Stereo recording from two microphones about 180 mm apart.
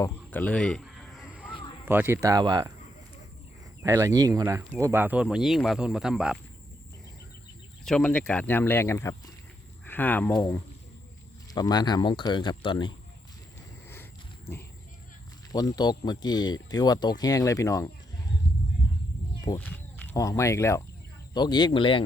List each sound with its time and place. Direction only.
0.0 s a sound: 10° left (ahead or behind)
1.8 s speech: 10° right (ahead or behind)
3.8 s speech: 15° right (ahead or behind)
7.9 s speech: 5° left (ahead or behind)
11.5 s speech: 25° left (ahead or behind)
13.9 s wild animals: 15° left (ahead or behind)
15.5 s speech: 20° left (ahead or behind)
19.5 s speech: 10° left (ahead or behind); by 22.0 s 30° left (ahead or behind)